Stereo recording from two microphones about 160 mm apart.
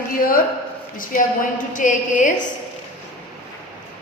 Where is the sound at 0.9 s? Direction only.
55° left (ahead or behind).